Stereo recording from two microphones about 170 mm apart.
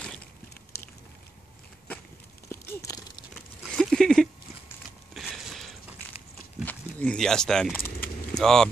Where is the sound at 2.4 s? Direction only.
20° left (ahead or behind).